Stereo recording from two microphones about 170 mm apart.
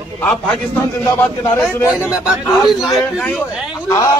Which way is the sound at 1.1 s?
15° left (ahead or behind).